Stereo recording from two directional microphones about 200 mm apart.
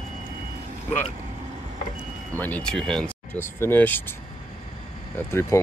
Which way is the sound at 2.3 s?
10° left (ahead or behind).